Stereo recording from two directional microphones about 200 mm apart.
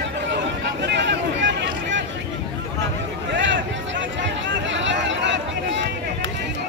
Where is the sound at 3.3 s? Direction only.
65° right (ahead or behind).